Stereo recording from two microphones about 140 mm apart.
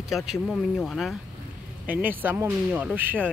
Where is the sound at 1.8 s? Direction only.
10° right (ahead or behind).